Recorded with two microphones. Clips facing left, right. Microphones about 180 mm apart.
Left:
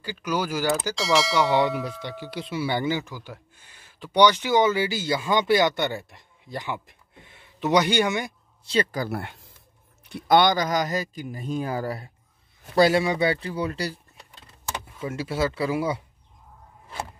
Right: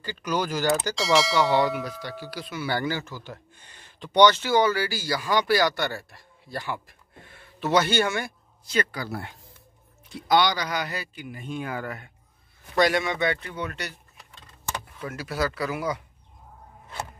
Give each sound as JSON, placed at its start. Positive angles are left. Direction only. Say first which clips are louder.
{"t": 0.0, "sound": "speech", "louder": "even", "side_deg": 10}
{"t": 1.9, "sound": "speech", "louder": "left 1 dB", "side_deg": 20}
{"t": 8.9, "sound": "a man's voice", "louder": "left 4 dB", "side_deg": 50}